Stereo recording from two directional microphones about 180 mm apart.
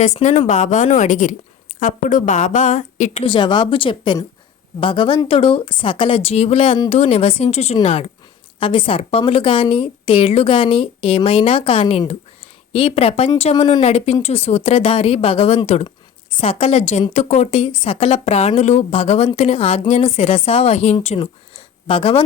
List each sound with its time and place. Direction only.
0.0 s a woman's voice: 40° left (ahead or behind)
3.2 s a woman's voice: 25° left (ahead or behind)